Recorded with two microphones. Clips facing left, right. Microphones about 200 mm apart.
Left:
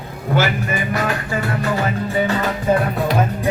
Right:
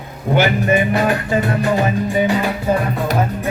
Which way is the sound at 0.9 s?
20° right (ahead or behind).